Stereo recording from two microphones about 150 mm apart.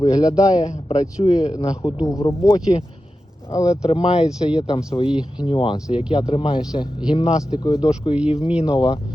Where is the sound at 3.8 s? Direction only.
40° left (ahead or behind).